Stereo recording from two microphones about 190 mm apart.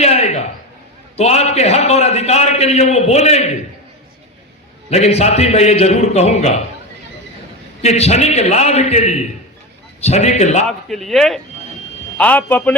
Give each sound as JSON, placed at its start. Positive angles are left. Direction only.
{"t": 0.0, "sound": "a sound", "side_deg": 35}
{"t": 1.1, "sound": "a man's voice", "side_deg": 35}
{"t": 4.9, "sound": "a man's voice", "side_deg": 35}
{"t": 7.8, "sound": "a man's voice", "side_deg": 35}
{"t": 10.7, "sound": "a man's voice", "side_deg": 0}